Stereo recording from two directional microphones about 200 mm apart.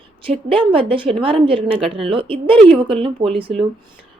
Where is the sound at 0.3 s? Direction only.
25° right (ahead or behind).